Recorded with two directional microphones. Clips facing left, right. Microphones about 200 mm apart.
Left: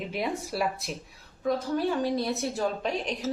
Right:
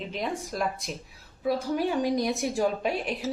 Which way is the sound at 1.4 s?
10° right (ahead or behind).